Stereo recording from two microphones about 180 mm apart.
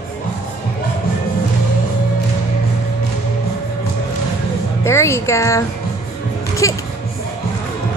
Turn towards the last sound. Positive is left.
turn(degrees=20)  # may be behind; listen again after turning